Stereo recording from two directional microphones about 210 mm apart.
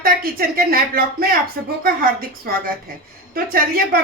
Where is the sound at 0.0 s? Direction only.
45° right (ahead or behind).